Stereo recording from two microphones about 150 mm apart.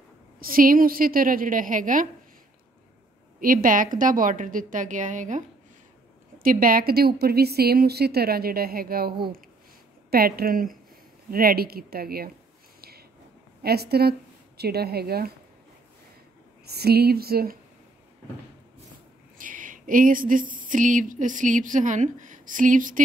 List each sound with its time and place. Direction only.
0.4 s a woman's voice: 75° right (ahead or behind)
3.3 s a woman's voice: 70° right (ahead or behind)
6.4 s speech: 70° right (ahead or behind)
10.1 s speech: 90° right
13.6 s speech: 90° right
16.6 s speech: 90° right
19.3 s a sound: 60° right (ahead or behind)